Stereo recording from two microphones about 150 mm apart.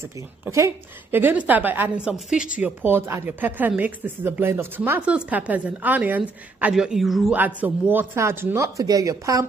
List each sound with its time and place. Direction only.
0.0 s a woman's voice: 20° right (ahead or behind)